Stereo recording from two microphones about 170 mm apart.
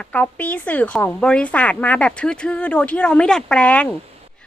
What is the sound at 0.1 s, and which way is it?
A woman's voice, 10° left (ahead or behind).